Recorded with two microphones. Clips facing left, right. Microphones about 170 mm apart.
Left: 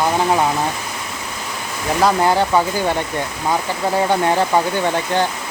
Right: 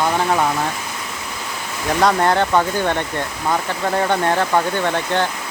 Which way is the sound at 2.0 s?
5° left (ahead or behind).